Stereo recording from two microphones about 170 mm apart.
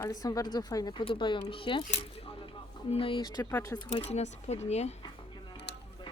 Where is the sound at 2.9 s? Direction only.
30° left (ahead or behind).